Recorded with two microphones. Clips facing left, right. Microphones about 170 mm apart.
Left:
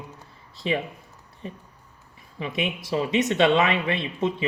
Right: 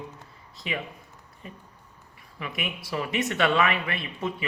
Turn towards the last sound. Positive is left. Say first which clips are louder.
# left 6 dB
turn(degrees=25)  # may be behind; listen again after turning